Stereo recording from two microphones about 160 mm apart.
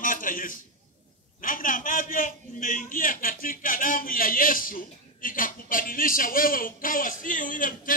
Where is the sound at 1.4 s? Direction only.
60° left (ahead or behind).